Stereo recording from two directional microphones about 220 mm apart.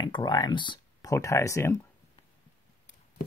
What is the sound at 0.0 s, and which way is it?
Speech, 20° left (ahead or behind).